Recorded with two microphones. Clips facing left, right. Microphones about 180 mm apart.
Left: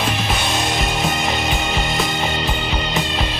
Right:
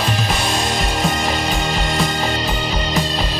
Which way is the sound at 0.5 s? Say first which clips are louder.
Right 1 dB; centre (ahead or behind).